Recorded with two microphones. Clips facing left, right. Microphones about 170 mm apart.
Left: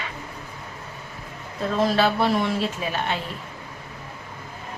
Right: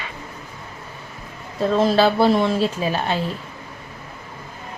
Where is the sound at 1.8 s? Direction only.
30° right (ahead or behind).